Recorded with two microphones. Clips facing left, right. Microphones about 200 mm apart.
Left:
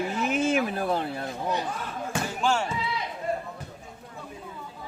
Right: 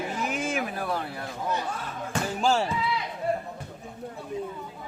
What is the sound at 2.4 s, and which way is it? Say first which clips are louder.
Speech: right 2 dB; 30° right (ahead or behind).